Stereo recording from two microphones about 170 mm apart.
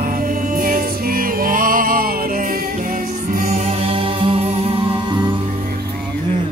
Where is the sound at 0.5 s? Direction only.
55° right (ahead or behind).